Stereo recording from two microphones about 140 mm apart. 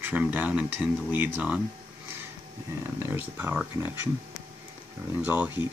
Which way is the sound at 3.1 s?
15° right (ahead or behind).